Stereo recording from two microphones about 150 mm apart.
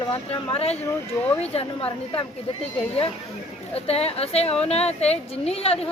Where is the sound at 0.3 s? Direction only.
40° left (ahead or behind).